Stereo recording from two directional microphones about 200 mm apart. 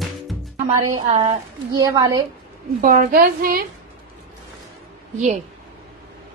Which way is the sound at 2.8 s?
45° right (ahead or behind).